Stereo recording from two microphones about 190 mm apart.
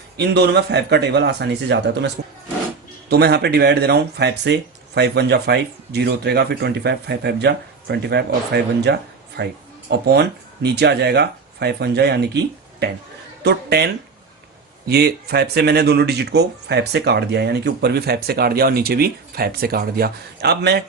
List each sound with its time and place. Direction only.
0.2 s speech: 60° right (ahead or behind)